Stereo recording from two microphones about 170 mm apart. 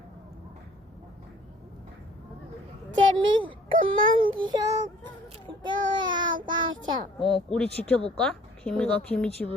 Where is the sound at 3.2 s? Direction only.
30° right (ahead or behind).